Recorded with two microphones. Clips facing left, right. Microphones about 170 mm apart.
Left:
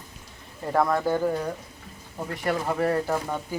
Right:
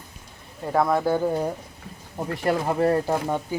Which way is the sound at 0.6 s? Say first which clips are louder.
Right 2 dB; 5° right (ahead or behind).